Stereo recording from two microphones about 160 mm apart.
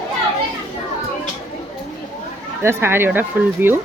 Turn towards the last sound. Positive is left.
turn(degrees=-10)  # may be behind; listen again after turning